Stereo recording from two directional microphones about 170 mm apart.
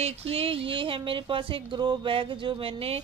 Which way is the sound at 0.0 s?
35° right (ahead or behind).